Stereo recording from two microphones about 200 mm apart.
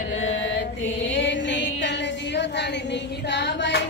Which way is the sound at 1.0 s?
65° left (ahead or behind).